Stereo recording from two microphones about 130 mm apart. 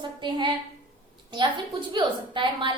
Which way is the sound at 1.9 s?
35° right (ahead or behind).